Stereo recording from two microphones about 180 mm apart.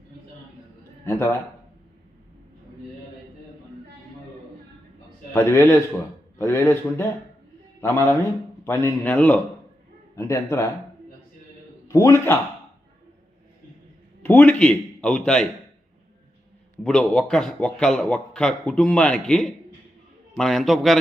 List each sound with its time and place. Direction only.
1.0 s a man's voice: 10° left (ahead or behind)
5.3 s a man's voice: 15° left (ahead or behind)
11.9 s a man's voice: 15° left (ahead or behind)
14.2 s a man's voice: 10° left (ahead or behind)
16.8 s a man's voice: 5° left (ahead or behind)